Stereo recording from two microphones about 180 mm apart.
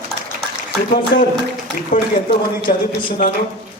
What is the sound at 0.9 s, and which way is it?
Speech, 50° left (ahead or behind).